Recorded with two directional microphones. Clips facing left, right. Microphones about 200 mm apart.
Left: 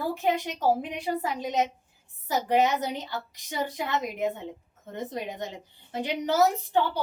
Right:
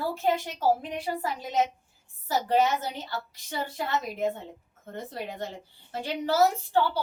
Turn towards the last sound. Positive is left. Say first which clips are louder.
# even
turn(degrees=15)  # may be behind; listen again after turning